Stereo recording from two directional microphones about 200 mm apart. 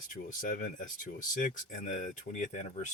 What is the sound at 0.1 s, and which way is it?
Speech, 40° left (ahead or behind).